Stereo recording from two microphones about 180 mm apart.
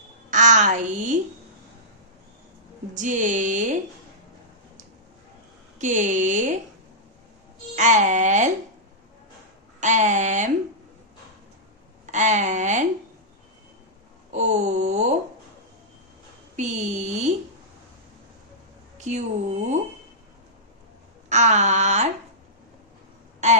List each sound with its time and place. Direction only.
0.3 s a woman's voice: 45° right (ahead or behind)
2.9 s speech: 45° right (ahead or behind)
5.8 s speech: 45° right (ahead or behind)
7.7 s speech: 45° right (ahead or behind)
9.8 s speech: 45° right (ahead or behind)
12.1 s speech: 45° right (ahead or behind)
14.3 s a sound: 40° right (ahead or behind)
16.5 s a sound: 40° right (ahead or behind)
18.9 s a woman's voice: 40° right (ahead or behind)
21.3 s a sound: 40° right (ahead or behind)
23.4 s a woman's voice: 40° right (ahead or behind)